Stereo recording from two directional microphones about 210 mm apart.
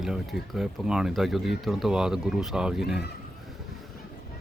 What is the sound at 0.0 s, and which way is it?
Speech, centre (ahead or behind).